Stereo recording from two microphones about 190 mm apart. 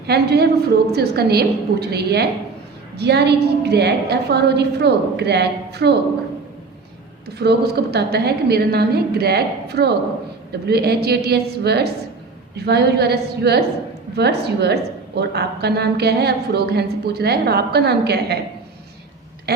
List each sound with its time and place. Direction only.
0.1 s a woman's voice: 55° right (ahead or behind)
7.3 s a woman's voice: 60° right (ahead or behind)